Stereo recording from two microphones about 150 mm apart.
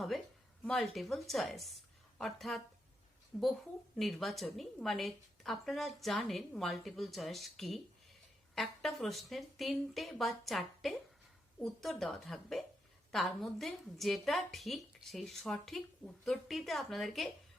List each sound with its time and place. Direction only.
0.6 s a woman's voice: 5° left (ahead or behind)